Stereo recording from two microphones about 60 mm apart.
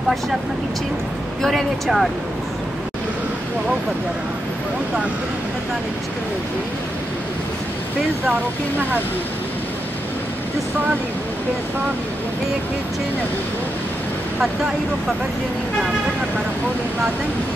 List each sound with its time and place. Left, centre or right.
1.4 s speech: centre